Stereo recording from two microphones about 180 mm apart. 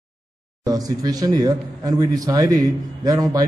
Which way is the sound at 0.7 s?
20° right (ahead or behind).